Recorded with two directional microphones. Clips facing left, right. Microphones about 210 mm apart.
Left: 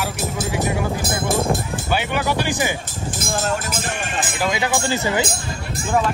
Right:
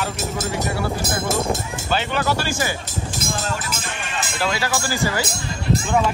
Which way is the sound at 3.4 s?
50° left (ahead or behind).